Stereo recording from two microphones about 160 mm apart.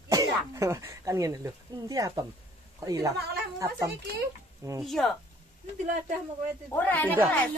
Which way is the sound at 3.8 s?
90° right.